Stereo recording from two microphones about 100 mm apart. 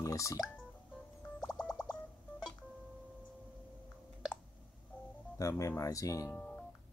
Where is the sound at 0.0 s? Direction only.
35° left (ahead or behind).